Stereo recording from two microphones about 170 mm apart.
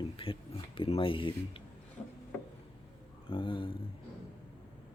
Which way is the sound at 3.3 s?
30° left (ahead or behind).